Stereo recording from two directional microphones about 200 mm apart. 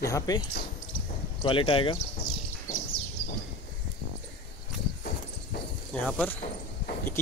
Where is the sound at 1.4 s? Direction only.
25° left (ahead or behind).